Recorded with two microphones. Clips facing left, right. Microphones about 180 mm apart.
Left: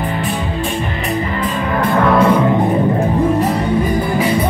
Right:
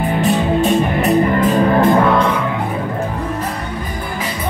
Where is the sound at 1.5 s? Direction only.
40° right (ahead or behind).